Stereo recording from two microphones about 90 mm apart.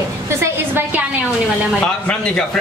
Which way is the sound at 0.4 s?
25° right (ahead or behind).